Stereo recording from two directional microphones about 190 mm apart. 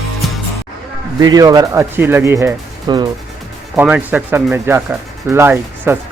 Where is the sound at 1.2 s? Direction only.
20° right (ahead or behind).